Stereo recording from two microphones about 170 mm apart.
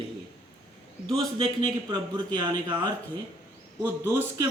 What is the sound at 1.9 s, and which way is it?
Speech, 25° right (ahead or behind).